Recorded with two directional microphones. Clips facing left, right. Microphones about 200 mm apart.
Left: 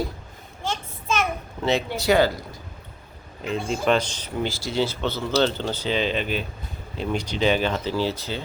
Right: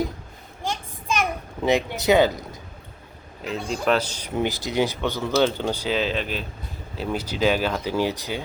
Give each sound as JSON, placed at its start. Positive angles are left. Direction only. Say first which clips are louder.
{"t": 0.6, "sound": "child singing", "louder": "even", "side_deg": -15}
{"t": 1.6, "sound": "speech", "louder": "right 2 dB", "side_deg": -20}
{"t": 3.4, "sound": "speech", "louder": "left 1 dB", "side_deg": 0}
{"t": 4.4, "sound": "speech", "louder": "right 2 dB", "side_deg": -20}